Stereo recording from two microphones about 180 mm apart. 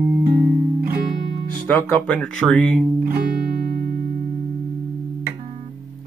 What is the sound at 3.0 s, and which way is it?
Music, 55° right (ahead or behind).